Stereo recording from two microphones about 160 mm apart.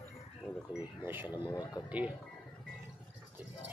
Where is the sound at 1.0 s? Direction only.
15° right (ahead or behind).